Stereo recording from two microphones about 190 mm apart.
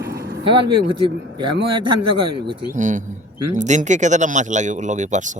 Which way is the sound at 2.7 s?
40° right (ahead or behind).